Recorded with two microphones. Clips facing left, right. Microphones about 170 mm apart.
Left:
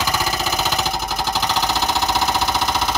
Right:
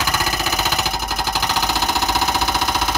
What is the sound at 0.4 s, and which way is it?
Engine, 5° right (ahead or behind).